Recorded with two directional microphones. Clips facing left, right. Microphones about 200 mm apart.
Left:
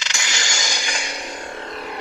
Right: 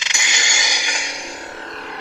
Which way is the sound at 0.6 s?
15° right (ahead or behind).